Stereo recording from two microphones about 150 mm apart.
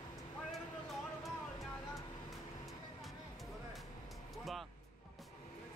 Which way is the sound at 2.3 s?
Centre (ahead or behind).